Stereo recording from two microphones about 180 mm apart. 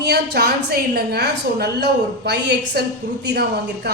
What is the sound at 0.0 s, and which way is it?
A woman's voice, 60° right (ahead or behind).